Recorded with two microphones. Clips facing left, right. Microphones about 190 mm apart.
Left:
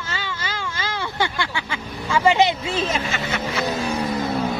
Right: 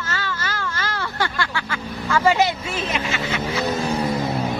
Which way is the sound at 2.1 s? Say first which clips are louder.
Left 1 dB; 15° left (ahead or behind).